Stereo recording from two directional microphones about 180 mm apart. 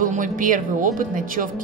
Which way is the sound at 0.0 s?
45° right (ahead or behind).